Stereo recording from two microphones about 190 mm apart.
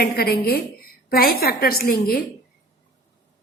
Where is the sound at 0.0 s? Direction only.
55° left (ahead or behind).